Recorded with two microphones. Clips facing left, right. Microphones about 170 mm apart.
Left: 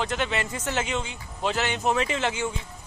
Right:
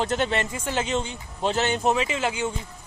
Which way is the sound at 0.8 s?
35° right (ahead or behind).